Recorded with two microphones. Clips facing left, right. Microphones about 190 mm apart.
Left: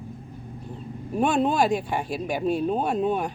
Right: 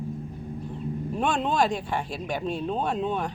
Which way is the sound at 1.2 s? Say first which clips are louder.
Left 4 dB; 10° left (ahead or behind).